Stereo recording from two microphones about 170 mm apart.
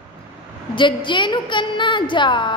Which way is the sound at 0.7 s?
30° left (ahead or behind).